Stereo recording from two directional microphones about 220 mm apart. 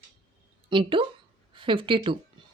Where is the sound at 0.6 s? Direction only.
25° right (ahead or behind).